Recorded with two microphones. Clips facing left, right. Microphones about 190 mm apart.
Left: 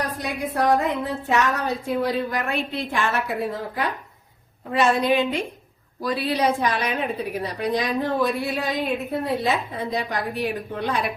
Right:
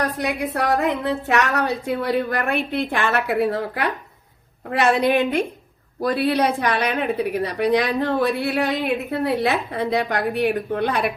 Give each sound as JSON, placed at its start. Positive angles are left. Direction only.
{"t": 0.2, "sound": "a woman's voice", "side_deg": -70}